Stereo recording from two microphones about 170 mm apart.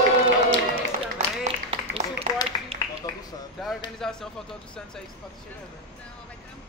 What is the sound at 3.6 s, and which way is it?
Speech, centre (ahead or behind).